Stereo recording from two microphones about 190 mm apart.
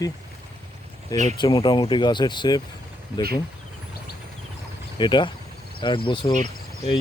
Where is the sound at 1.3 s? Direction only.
25° left (ahead or behind).